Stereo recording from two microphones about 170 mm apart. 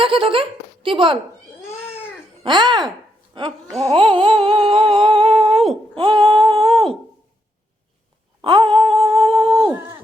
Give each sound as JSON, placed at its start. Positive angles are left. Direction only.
{"t": 0.0, "sound": "speech", "side_deg": -30}
{"t": 1.8, "sound": "cat", "side_deg": 10}
{"t": 2.4, "sound": "a sound", "side_deg": -25}
{"t": 3.8, "sound": "humming", "side_deg": -30}
{"t": 5.5, "sound": "speech", "side_deg": 0}
{"t": 6.0, "sound": "humming", "side_deg": -30}
{"t": 8.4, "sound": "a sound", "side_deg": -30}